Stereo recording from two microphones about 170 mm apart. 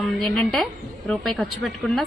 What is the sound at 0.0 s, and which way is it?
Speech, centre (ahead or behind).